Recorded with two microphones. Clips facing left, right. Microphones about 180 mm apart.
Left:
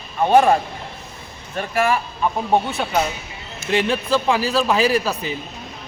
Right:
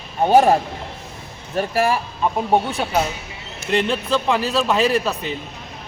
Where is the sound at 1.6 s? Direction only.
35° right (ahead or behind).